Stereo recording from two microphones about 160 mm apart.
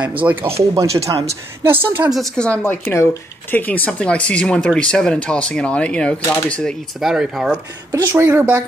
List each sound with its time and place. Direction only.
0.2 s speech: 10° right (ahead or behind)
1.1 s speech: 25° right (ahead or behind)
2.1 s speech: 5° left (ahead or behind)
7.0 s speech: centre (ahead or behind)
7.9 s speech: 20° right (ahead or behind)
8.3 s speech: 10° right (ahead or behind)